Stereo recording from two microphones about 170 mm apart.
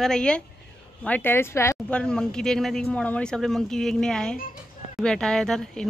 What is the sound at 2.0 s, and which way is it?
Speech, 5° left (ahead or behind).